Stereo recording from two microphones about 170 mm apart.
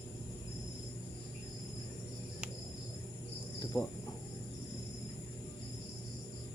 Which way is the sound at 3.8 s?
25° left (ahead or behind).